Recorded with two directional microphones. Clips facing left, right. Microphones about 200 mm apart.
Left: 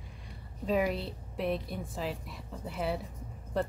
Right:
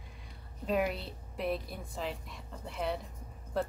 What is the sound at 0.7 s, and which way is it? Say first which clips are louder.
Speech: left 2 dB; centre (ahead or behind).